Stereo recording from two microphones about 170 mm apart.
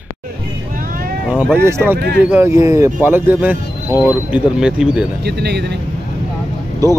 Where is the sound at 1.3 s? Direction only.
10° right (ahead or behind).